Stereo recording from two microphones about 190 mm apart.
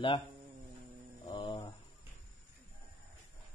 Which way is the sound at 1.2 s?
25° left (ahead or behind).